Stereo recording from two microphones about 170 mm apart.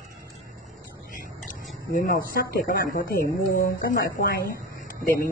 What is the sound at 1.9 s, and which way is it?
Speech, 55° left (ahead or behind).